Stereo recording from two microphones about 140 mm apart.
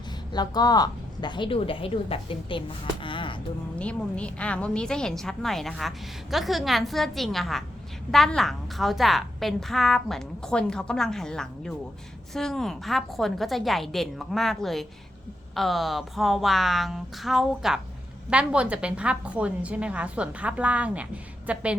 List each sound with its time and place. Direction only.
0.3 s a woman's voice: 30° left (ahead or behind)
3.8 s a woman's voice: 10° left (ahead or behind); by 21.8 s 10° right (ahead or behind)